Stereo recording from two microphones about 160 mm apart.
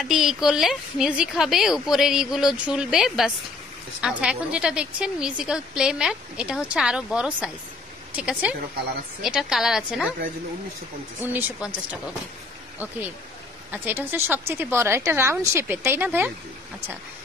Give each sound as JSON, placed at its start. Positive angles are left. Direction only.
{"t": 0.0, "sound": "a woman's voice", "side_deg": 0}
{"t": 11.1, "sound": "a woman's voice", "side_deg": -10}
{"t": 13.7, "sound": "a woman's voice", "side_deg": -10}